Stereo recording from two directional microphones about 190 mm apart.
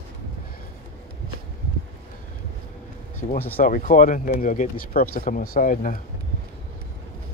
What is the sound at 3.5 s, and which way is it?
Speech, 45° left (ahead or behind).